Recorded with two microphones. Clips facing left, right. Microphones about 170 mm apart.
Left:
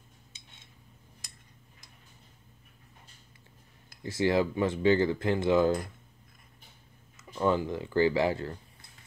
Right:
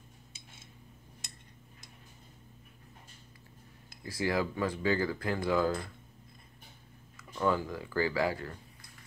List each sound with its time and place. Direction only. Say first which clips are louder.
4.0 s speech: left 5 dB; 25° left (ahead or behind)
7.2 s speech: left 3 dB; 25° left (ahead or behind)